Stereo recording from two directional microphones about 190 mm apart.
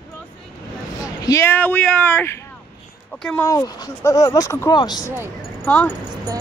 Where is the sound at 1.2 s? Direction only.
15° left (ahead or behind).